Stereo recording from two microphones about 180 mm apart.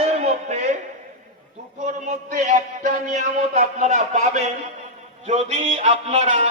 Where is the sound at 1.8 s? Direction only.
40° right (ahead or behind).